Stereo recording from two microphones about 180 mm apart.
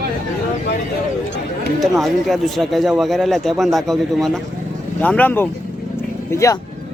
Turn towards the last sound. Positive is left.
turn(degrees=15)  # may be behind; listen again after turning